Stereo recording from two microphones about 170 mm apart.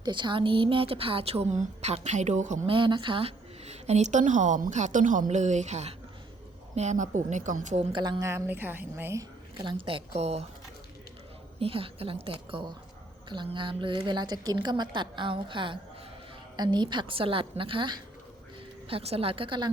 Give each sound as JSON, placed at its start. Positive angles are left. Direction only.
{"t": 0.0, "sound": "a woman's voice", "side_deg": -25}
{"t": 2.6, "sound": "a woman's voice", "side_deg": -30}
{"t": 7.9, "sound": "a woman's voice", "side_deg": -25}
{"t": 9.8, "sound": "a woman's voice", "side_deg": -35}
{"t": 11.6, "sound": "a woman's voice", "side_deg": -35}